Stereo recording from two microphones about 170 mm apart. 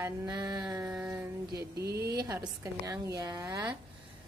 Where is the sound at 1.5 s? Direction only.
70° right (ahead or behind).